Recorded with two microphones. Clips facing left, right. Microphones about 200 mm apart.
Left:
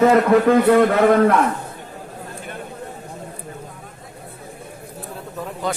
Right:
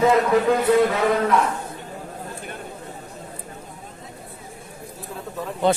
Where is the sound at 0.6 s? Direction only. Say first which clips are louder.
Left 3 dB; 60° left (ahead or behind).